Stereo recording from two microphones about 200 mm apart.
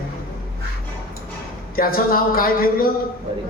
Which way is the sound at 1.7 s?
45° left (ahead or behind).